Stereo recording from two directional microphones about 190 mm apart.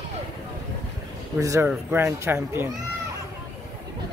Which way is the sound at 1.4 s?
15° right (ahead or behind).